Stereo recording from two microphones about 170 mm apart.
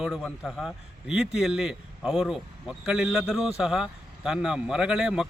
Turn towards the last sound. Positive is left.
turn(degrees=-5)  # may be behind; listen again after turning